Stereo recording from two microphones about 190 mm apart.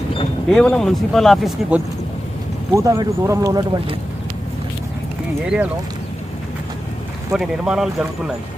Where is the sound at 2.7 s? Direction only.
15° right (ahead or behind).